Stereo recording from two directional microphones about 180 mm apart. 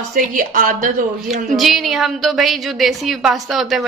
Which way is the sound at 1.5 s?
Centre (ahead or behind).